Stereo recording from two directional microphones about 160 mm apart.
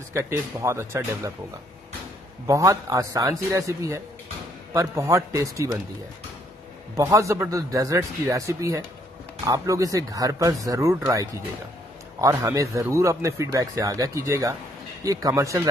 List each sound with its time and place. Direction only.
0.1 s speech: 20° right (ahead or behind)
2.4 s speech: 20° right (ahead or behind)
7.0 s speech: 20° right (ahead or behind)